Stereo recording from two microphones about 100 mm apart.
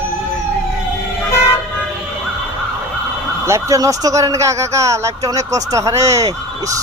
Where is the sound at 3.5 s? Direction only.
35° right (ahead or behind).